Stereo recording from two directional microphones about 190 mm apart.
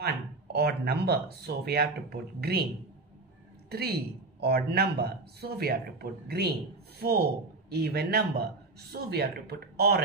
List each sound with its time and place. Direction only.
0.0 s speech: 55° right (ahead or behind)
3.7 s speech: 55° right (ahead or behind)